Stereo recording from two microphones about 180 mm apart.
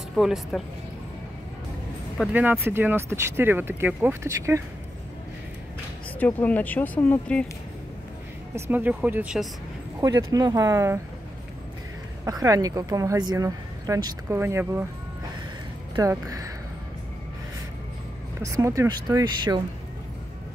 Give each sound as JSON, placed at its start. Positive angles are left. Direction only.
{"t": 0.1, "sound": "speech", "side_deg": 0}
{"t": 2.3, "sound": "speech", "side_deg": -10}
{"t": 6.1, "sound": "speech", "side_deg": 10}
{"t": 8.5, "sound": "speech", "side_deg": -10}
{"t": 9.9, "sound": "speech", "side_deg": -20}
{"t": 12.3, "sound": "speech", "side_deg": -20}
{"t": 16.0, "sound": "speech", "side_deg": -20}
{"t": 18.4, "sound": "speech", "side_deg": -15}